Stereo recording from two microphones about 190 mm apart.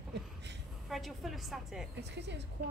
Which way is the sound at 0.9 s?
Centre (ahead or behind).